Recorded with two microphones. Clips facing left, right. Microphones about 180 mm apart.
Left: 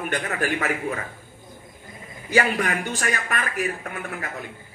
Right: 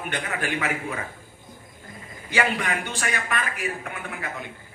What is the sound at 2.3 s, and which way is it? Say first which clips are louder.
A man's voice: left 3 dB; 45° left (ahead or behind).